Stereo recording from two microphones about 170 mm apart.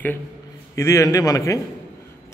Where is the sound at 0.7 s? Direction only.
15° left (ahead or behind).